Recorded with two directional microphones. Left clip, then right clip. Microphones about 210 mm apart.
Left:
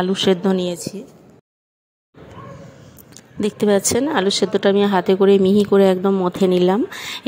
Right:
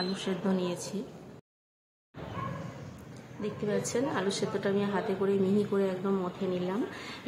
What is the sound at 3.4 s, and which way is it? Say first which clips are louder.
A woman's voice: left 15 dB; 45° left (ahead or behind).